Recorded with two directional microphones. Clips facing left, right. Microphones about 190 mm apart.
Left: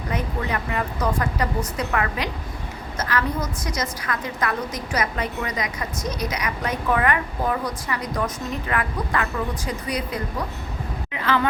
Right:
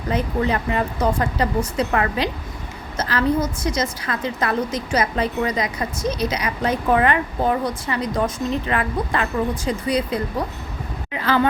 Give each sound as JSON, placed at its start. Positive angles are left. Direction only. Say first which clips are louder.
{"t": 0.1, "sound": "a woman's voice", "louder": "right 6 dB", "side_deg": -30}